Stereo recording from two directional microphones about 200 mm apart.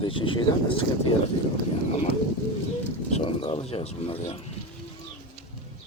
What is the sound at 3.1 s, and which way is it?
Speech, 25° left (ahead or behind).